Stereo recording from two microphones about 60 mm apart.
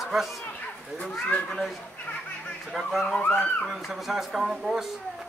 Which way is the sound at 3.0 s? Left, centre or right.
Centre.